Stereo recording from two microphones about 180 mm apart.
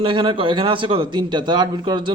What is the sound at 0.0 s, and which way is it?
A man's voice, 25° right (ahead or behind).